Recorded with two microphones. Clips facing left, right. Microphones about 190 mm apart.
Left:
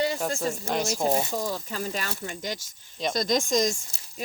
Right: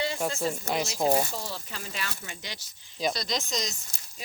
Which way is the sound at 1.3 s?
45° left (ahead or behind).